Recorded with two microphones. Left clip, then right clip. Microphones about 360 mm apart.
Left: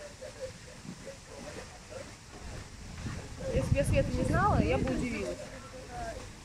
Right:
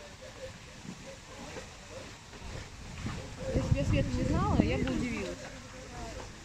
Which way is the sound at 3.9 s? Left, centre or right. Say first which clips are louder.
Left 3 dB; left.